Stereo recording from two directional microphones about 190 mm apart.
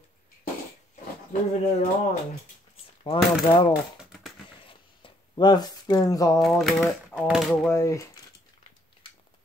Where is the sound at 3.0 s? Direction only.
25° left (ahead or behind).